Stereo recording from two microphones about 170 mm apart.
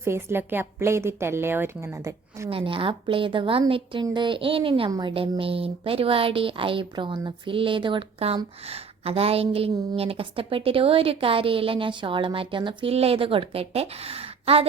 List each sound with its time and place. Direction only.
0.0 s a woman's voice: 15° right (ahead or behind)
2.5 s a woman's voice: 30° right (ahead or behind)